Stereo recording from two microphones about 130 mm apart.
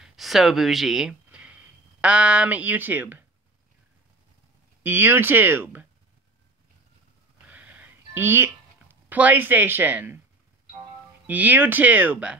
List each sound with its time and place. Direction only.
0.0 s speech: centre (ahead or behind)
4.8 s speech: 15° right (ahead or behind)
7.4 s a sound: 10° right (ahead or behind)
11.2 s speech: 10° right (ahead or behind)